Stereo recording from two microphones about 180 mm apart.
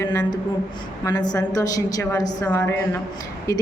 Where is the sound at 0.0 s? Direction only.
20° left (ahead or behind).